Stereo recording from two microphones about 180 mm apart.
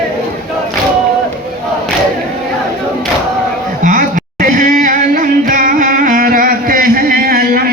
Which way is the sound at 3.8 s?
45° right (ahead or behind).